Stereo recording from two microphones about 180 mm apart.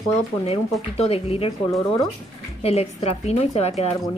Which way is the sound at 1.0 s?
35° left (ahead or behind).